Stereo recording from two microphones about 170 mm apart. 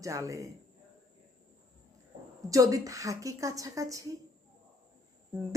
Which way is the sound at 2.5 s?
20° right (ahead or behind).